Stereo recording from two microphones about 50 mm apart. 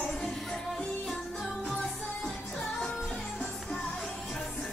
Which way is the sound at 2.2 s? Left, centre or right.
Centre.